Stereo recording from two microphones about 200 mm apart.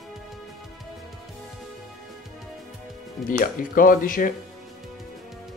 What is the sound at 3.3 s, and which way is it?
Speech, 45° left (ahead or behind).